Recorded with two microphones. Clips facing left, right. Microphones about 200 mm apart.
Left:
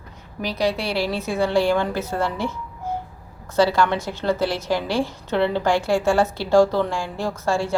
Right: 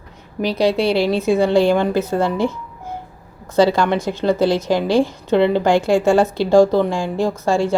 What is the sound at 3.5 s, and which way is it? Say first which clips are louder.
A woman's voice: right 4 dB; 20° right (ahead or behind).